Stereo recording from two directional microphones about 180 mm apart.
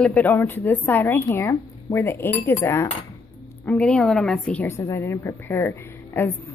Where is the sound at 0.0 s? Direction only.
10° left (ahead or behind).